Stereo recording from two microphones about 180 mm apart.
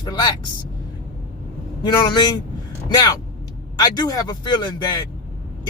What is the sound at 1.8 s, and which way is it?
Speech, 25° left (ahead or behind).